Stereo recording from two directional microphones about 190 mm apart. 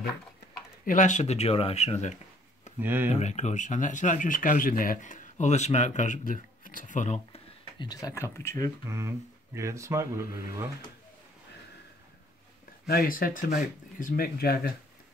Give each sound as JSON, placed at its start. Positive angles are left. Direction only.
{"t": 0.8, "sound": "speech", "side_deg": 40}
{"t": 2.8, "sound": "speech", "side_deg": -10}
{"t": 3.2, "sound": "speech", "side_deg": 35}
{"t": 7.8, "sound": "speech", "side_deg": 20}
{"t": 8.8, "sound": "speech", "side_deg": -15}
{"t": 12.8, "sound": "speech", "side_deg": 50}